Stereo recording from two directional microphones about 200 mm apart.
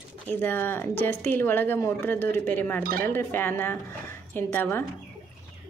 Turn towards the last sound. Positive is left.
turn(degrees=10)  # may be behind; listen again after turning